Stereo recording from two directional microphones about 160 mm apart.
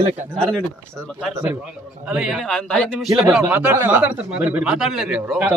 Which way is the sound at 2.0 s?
5° right (ahead or behind).